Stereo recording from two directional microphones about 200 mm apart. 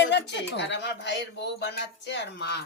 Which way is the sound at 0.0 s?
60° left (ahead or behind).